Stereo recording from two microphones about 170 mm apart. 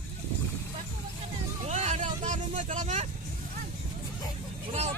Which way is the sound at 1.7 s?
40° right (ahead or behind).